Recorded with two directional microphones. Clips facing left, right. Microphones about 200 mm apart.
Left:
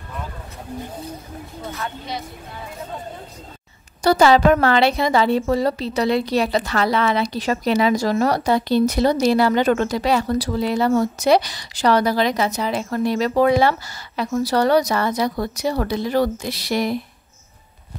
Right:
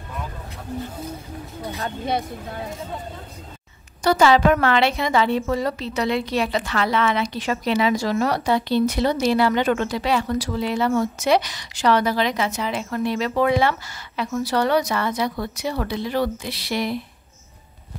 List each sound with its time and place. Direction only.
2.0 s speech: 55° right (ahead or behind)
4.0 s a woman's voice: 35° left (ahead or behind)